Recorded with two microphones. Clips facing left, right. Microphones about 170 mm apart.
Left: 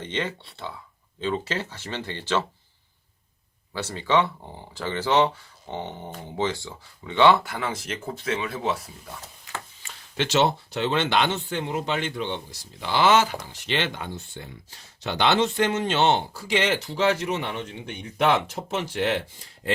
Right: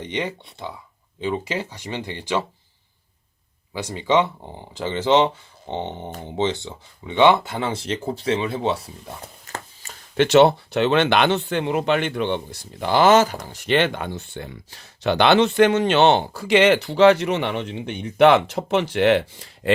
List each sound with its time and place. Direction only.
0.0 s speech: 15° right (ahead or behind)
3.7 s speech: 15° right (ahead or behind)
9.5 s a sound: 45° right (ahead or behind)
10.2 s speech: 60° right (ahead or behind)